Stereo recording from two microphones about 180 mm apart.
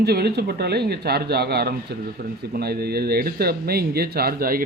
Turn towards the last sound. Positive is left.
turn(degrees=-55)  # may be behind; listen again after turning